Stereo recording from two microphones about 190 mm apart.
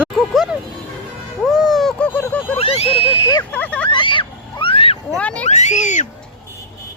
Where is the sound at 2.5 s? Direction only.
30° left (ahead or behind).